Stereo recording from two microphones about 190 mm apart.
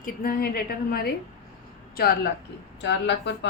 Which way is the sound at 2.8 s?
65° left (ahead or behind).